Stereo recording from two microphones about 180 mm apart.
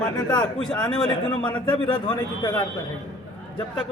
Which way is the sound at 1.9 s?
25° left (ahead or behind).